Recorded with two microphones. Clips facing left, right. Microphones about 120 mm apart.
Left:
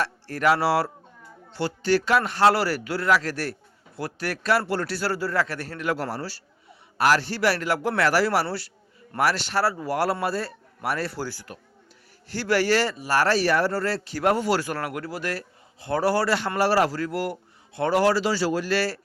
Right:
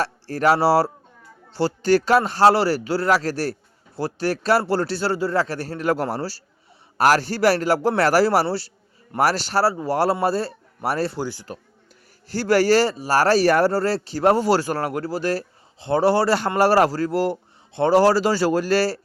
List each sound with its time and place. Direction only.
0.0 s speech: 35° right (ahead or behind)
11.2 s speech: 20° right (ahead or behind)
12.3 s speech: 40° right (ahead or behind)
16.6 s speech: 45° right (ahead or behind)